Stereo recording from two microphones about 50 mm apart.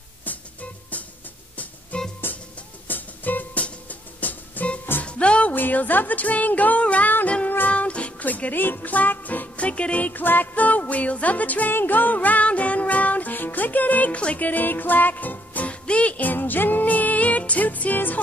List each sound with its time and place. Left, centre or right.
0.2 s music: left
2.9 s music: left
5.0 s music: left
5.5 s speech: left
11.7 s music: left